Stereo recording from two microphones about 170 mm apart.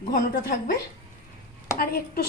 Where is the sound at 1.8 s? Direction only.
60° left (ahead or behind).